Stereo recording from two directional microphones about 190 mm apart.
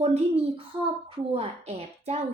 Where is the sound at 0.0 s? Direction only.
35° right (ahead or behind).